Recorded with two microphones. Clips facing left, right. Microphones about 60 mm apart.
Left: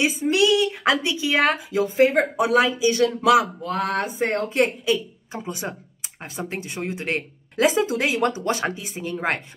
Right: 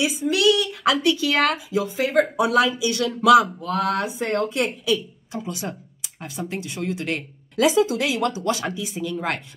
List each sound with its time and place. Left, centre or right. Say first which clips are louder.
0.0 s speech: even; left